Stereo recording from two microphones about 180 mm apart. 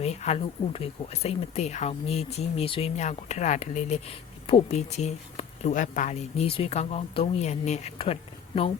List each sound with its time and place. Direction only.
0.0 s speech: 35° left (ahead or behind)